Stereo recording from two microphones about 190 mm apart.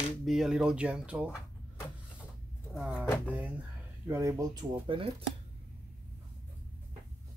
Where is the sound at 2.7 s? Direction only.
Centre (ahead or behind).